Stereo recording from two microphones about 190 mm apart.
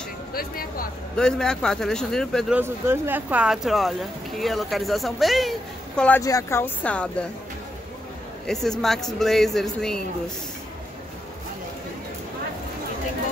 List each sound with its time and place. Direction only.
0.3 s speech: 50° left (ahead or behind)
1.1 s speech: 5° left (ahead or behind)
2.5 s speech: 10° right (ahead or behind); by 7.2 s 5° left (ahead or behind)
8.6 s speech: centre (ahead or behind)